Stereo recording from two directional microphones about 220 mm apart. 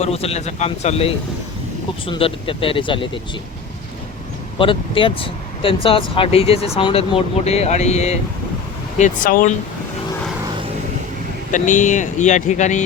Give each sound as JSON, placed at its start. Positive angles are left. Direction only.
{"t": 0.0, "sound": "speech", "side_deg": 30}
{"t": 4.5, "sound": "speech", "side_deg": 25}
{"t": 11.5, "sound": "speech", "side_deg": 35}